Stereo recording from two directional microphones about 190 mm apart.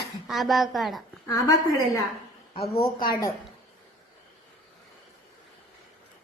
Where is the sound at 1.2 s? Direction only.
15° left (ahead or behind).